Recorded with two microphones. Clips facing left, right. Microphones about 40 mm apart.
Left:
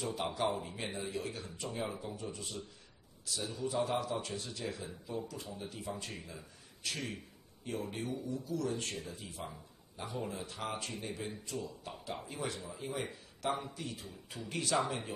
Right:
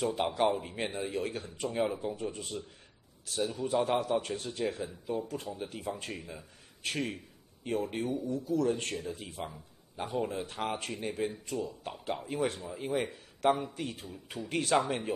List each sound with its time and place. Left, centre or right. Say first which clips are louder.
0.0 s a man's voice: right 6 dB; right